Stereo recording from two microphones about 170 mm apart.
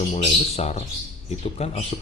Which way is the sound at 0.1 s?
40° left (ahead or behind).